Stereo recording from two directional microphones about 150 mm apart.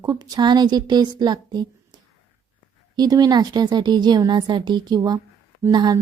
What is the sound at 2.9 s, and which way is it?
A woman's voice, 25° right (ahead or behind).